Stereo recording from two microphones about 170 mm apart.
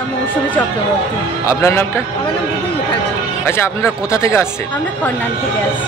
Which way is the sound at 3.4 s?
15° left (ahead or behind).